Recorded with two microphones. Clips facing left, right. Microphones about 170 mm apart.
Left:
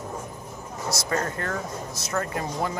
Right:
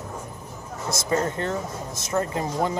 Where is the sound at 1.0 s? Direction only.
20° right (ahead or behind).